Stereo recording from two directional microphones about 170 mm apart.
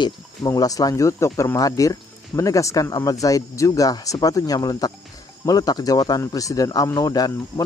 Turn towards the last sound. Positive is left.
turn(degrees=20)  # may be behind; listen again after turning